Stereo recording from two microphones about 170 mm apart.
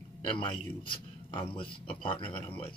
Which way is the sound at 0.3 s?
30° left (ahead or behind).